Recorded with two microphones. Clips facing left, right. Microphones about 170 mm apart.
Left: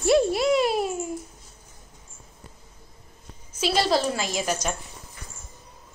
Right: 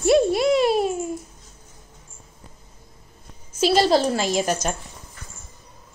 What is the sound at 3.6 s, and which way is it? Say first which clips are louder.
Speech: right 5 dB; 30° right (ahead or behind).